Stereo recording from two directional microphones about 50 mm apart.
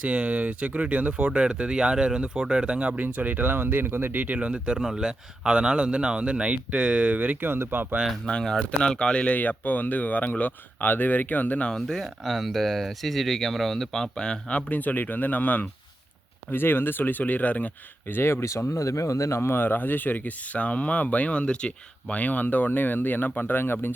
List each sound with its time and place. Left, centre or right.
0.0 s speech: right
4.4 s speech: right
7.4 s speech: right
8.3 s speech: centre
9.3 s speech: left
11.7 s speech: centre
14.7 s speech: left
16.5 s speech: left
18.1 s speech: left
18.7 s speech: left
22.1 s speech: left